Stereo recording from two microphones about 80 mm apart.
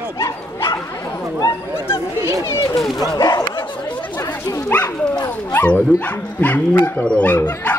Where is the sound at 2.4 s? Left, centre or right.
Left.